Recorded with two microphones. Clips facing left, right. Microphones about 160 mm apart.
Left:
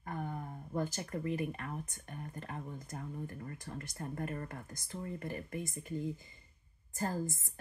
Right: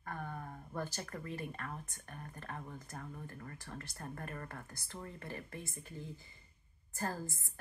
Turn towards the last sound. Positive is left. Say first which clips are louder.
# left 4 dB
turn(degrees=20)  # may be behind; listen again after turning